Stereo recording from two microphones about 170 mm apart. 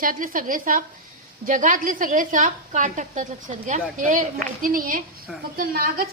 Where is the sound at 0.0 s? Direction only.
55° right (ahead or behind).